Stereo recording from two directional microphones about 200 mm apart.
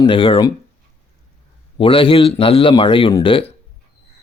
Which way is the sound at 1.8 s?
25° left (ahead or behind).